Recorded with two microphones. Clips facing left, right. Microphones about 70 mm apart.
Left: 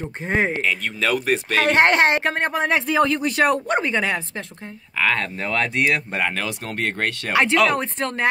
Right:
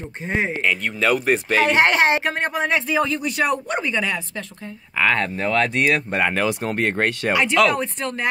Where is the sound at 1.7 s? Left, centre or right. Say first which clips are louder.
Left 2 dB; left.